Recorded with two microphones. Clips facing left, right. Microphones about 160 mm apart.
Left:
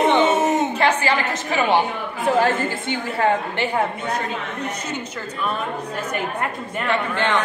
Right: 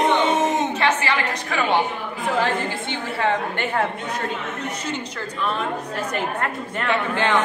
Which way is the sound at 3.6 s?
5° left (ahead or behind).